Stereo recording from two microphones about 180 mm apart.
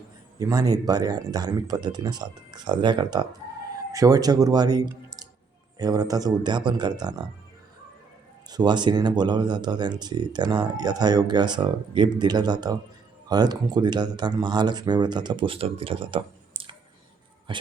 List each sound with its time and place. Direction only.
0.3 s speech: 20° right (ahead or behind)
8.4 s speech: 25° right (ahead or behind)
17.5 s music: 25° right (ahead or behind)